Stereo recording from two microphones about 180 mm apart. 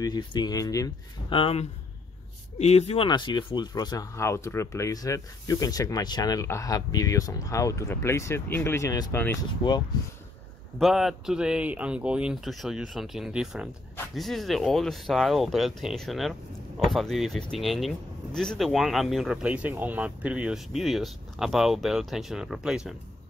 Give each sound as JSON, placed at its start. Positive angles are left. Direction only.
{"t": 0.0, "sound": "speech", "side_deg": 25}
{"t": 1.4, "sound": "speech", "side_deg": 35}
{"t": 9.6, "sound": "speech", "side_deg": 25}
{"t": 10.8, "sound": "speech", "side_deg": 0}